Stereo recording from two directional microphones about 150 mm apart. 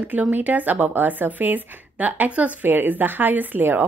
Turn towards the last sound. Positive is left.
turn(degrees=-10)  # may be behind; listen again after turning